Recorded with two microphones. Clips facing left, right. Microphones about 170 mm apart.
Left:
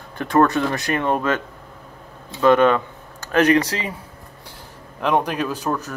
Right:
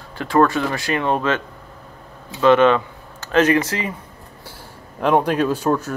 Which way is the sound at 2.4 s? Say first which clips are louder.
Right 1 dB; 10° left (ahead or behind).